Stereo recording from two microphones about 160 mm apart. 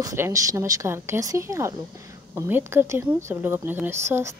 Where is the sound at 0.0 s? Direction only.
20° right (ahead or behind).